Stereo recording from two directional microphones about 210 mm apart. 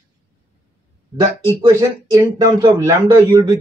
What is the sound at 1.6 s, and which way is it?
Speech, 15° right (ahead or behind).